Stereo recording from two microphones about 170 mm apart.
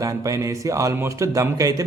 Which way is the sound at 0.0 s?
20° right (ahead or behind).